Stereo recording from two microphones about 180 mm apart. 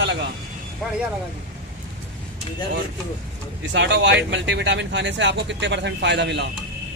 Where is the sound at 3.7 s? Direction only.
85° right.